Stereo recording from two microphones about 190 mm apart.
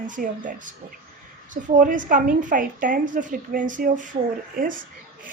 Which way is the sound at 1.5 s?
45° right (ahead or behind).